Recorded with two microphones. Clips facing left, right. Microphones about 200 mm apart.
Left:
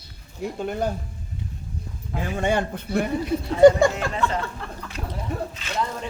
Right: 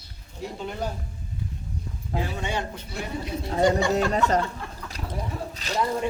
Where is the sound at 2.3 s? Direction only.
55° left (ahead or behind).